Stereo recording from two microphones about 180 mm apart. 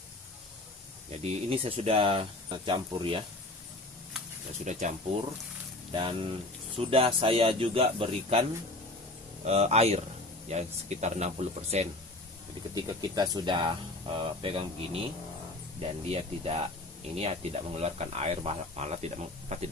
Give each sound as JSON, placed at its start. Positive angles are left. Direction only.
{"t": 1.1, "sound": "speech", "side_deg": -35}
{"t": 4.6, "sound": "speech", "side_deg": -40}
{"t": 5.9, "sound": "speech", "side_deg": -30}
{"t": 9.5, "sound": "speech", "side_deg": -35}
{"t": 12.7, "sound": "speech", "side_deg": -20}
{"t": 15.8, "sound": "speech", "side_deg": -35}